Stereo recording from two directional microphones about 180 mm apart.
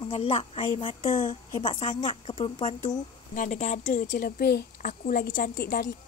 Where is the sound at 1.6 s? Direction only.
30° left (ahead or behind); by 5.8 s 55° left (ahead or behind).